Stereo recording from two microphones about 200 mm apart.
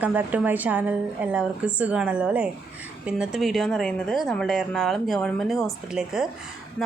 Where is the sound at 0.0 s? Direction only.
10° right (ahead or behind).